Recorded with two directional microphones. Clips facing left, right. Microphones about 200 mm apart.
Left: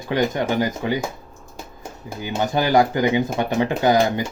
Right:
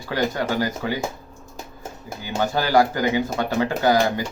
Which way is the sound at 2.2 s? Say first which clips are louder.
Left 2 dB; 20° left (ahead or behind).